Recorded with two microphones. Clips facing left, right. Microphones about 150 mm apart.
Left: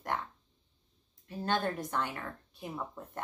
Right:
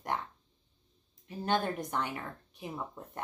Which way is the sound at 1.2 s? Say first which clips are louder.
Right 1 dB; 20° right (ahead or behind).